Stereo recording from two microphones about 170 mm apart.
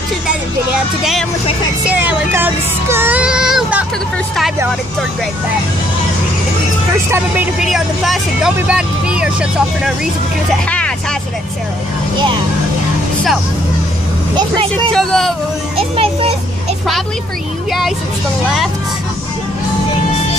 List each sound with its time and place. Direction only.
1.9 s child singing: 10° right (ahead or behind)
7.6 s speech: centre (ahead or behind)
14.9 s speech: 5° left (ahead or behind)
16.0 s a child's voice: 35° right (ahead or behind)
17.6 s speech: centre (ahead or behind)